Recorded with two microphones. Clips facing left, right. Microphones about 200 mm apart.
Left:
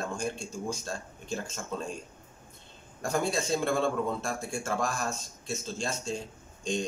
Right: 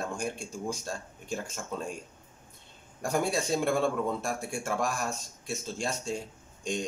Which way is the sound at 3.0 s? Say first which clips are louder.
Right 1 dB; 10° right (ahead or behind).